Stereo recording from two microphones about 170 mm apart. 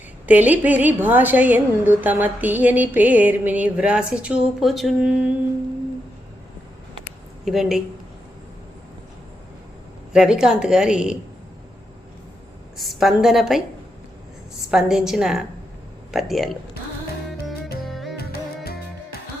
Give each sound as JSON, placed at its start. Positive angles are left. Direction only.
{"t": 0.3, "sound": "a woman's voice", "side_deg": -10}
{"t": 7.4, "sound": "a woman's voice", "side_deg": 0}
{"t": 10.1, "sound": "a woman's voice", "side_deg": -5}
{"t": 12.7, "sound": "a woman's voice", "side_deg": 0}
{"t": 14.7, "sound": "a woman's voice", "side_deg": -5}
{"t": 17.8, "sound": "music", "side_deg": 0}
{"t": 18.2, "sound": "music", "side_deg": 65}